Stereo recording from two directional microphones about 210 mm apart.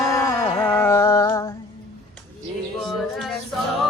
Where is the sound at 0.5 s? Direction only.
10° left (ahead or behind).